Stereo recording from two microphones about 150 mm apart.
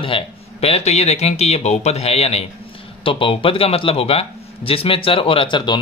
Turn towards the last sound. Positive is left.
turn(degrees=30)  # may be behind; listen again after turning